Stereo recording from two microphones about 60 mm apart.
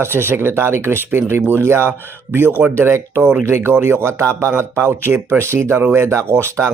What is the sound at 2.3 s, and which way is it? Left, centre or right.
Speech, right.